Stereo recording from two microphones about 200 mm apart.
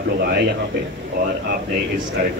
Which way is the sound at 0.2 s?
55° right (ahead or behind).